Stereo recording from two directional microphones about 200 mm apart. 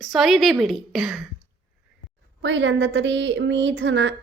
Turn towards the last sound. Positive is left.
turn(degrees=-65)  # may be behind; listen again after turning